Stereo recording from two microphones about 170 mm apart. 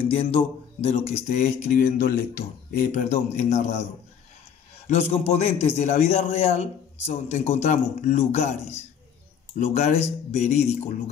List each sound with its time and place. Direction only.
0.1 s a man's voice: 35° left (ahead or behind)
4.8 s a man's voice: 40° left (ahead or behind)